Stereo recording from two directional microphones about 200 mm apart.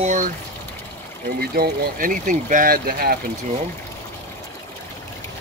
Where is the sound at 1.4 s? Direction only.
45° right (ahead or behind).